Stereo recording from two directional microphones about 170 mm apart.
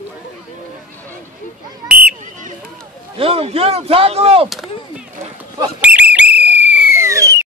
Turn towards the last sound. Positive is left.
turn(degrees=-20)  # may be behind; listen again after turning